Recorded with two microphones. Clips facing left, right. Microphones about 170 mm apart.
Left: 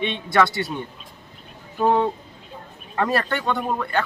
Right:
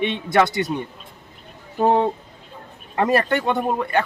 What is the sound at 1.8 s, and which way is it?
A man's voice, 20° right (ahead or behind).